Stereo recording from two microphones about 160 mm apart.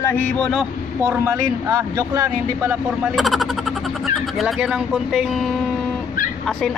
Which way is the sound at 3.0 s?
Centre (ahead or behind).